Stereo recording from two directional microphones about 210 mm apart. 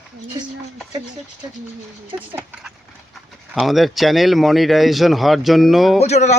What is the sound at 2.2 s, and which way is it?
Speech, 5° right (ahead or behind).